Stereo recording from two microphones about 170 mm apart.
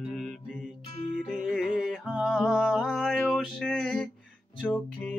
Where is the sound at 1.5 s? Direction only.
Centre (ahead or behind).